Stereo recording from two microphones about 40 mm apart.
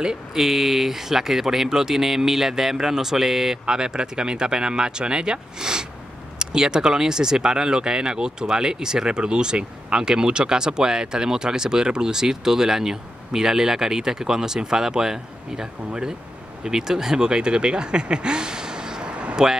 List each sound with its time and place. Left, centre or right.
0.0 s speech: centre